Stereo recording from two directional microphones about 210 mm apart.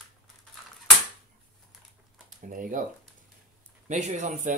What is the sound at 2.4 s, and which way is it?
Speech, 40° right (ahead or behind).